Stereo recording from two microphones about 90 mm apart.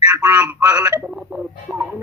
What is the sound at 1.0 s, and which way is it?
Speech, 10° right (ahead or behind).